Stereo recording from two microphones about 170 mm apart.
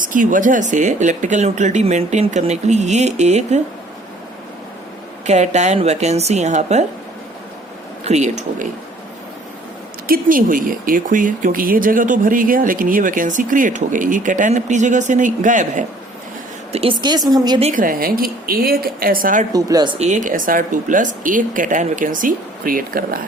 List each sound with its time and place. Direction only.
0.0 s speech: 50° right (ahead or behind)
5.2 s a woman's voice: 40° right (ahead or behind)
8.0 s speech: 40° right (ahead or behind)
10.1 s speech: 55° right (ahead or behind)
16.7 s a woman's voice: 30° right (ahead or behind)
17.6 s a woman's voice: 50° right (ahead or behind)
19.5 s a woman's voice: 20° right (ahead or behind)
20.0 s speech: 45° right (ahead or behind)